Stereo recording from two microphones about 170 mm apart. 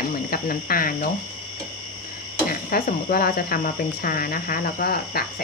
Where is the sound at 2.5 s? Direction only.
60° left (ahead or behind).